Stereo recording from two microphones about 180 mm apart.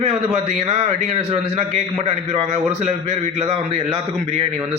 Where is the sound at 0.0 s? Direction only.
35° right (ahead or behind).